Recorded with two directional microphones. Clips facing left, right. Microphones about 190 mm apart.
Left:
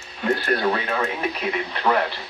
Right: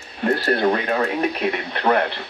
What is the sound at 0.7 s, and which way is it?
Speech, 35° right (ahead or behind).